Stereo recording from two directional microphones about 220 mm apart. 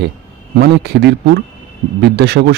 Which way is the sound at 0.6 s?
50° right (ahead or behind).